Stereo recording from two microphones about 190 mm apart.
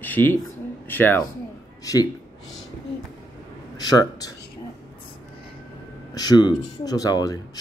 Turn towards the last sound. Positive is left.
turn(degrees=20)  # may be behind; listen again after turning